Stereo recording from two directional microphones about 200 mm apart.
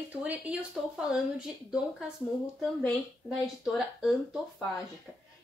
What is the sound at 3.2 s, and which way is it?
Speech, centre (ahead or behind).